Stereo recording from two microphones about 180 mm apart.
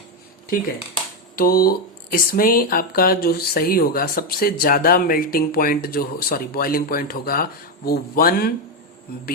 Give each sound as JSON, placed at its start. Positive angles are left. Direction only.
{"t": 1.4, "sound": "speech", "side_deg": 55}